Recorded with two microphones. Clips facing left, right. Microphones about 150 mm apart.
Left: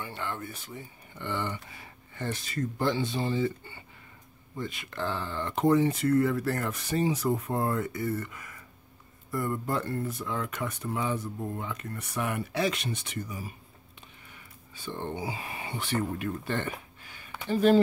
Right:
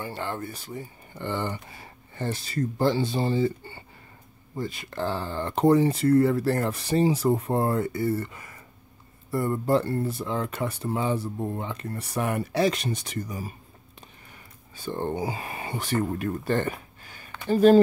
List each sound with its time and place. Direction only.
0.0 s speech: 35° right (ahead or behind)